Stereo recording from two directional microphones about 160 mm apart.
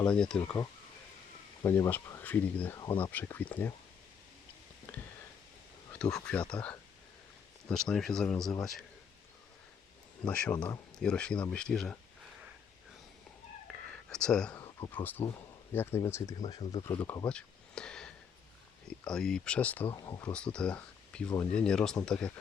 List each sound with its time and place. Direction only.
0.0 s speech: 5° left (ahead or behind)
1.6 s speech: 15° left (ahead or behind)
5.9 s a sound: 5° left (ahead or behind)
6.2 s speech: 5° left (ahead or behind)
10.2 s speech: 5° left (ahead or behind)
13.9 s speech: 5° left (ahead or behind); by 16.6 s 25° left (ahead or behind)
16.8 s speech: 15° left (ahead or behind)
19.9 s speech: 20° left (ahead or behind); by 22.3 s 5° left (ahead or behind)